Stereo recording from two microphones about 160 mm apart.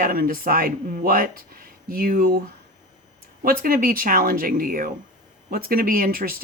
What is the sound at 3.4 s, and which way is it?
Speech, 65° right (ahead or behind).